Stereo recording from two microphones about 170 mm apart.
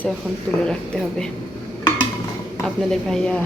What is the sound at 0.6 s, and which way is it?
Speech, 5° left (ahead or behind).